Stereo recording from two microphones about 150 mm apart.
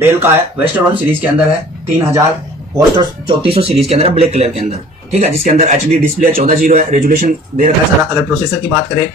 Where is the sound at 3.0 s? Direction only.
35° right (ahead or behind).